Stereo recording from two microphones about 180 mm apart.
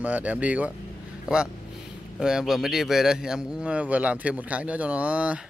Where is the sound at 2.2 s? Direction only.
Centre (ahead or behind).